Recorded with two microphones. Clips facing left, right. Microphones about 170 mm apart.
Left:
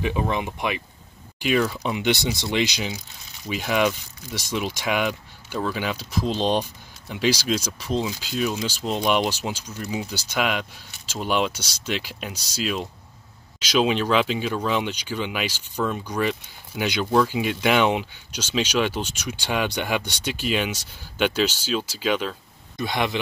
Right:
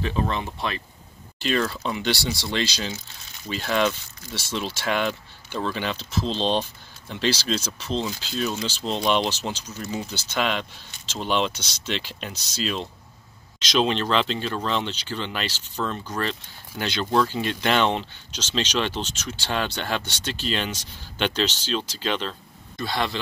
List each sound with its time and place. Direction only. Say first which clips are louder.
0.0 s speech: left 2 dB; 15° left (ahead or behind)